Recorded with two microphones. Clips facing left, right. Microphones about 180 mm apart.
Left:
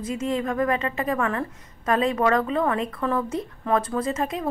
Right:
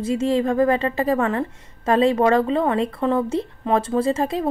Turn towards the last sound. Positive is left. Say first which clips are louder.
# right 5 dB
turn(degrees=-30)  # may be behind; listen again after turning